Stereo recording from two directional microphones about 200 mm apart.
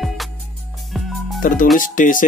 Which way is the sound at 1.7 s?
40° left (ahead or behind).